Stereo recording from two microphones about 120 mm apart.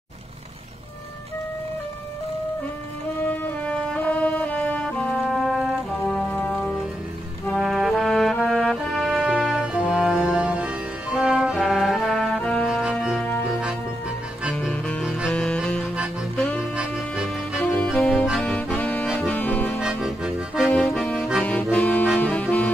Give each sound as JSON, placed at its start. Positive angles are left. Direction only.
{"t": 3.2, "sound": "music", "side_deg": 15}
{"t": 5.2, "sound": "music", "side_deg": -5}
{"t": 6.1, "sound": "music", "side_deg": 10}
{"t": 14.5, "sound": "music", "side_deg": 10}
{"t": 15.0, "sound": "music", "side_deg": -10}
{"t": 15.3, "sound": "music", "side_deg": 5}
{"t": 17.6, "sound": "music", "side_deg": 15}
{"t": 18.4, "sound": "accordion", "side_deg": 10}
{"t": 19.8, "sound": "accordion", "side_deg": -5}
{"t": 21.4, "sound": "accordion", "side_deg": 10}
{"t": 21.7, "sound": "saxophone", "side_deg": 10}